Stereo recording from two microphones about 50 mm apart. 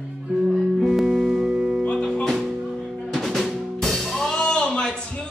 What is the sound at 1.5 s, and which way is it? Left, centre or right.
Music, centre.